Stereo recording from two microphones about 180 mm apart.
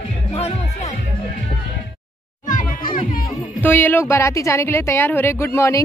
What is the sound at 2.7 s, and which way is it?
Music, 50° left (ahead or behind).